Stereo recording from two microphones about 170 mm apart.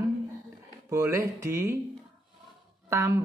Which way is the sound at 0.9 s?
15° right (ahead or behind).